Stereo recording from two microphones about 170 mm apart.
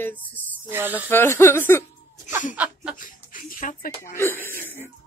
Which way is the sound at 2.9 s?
50° left (ahead or behind).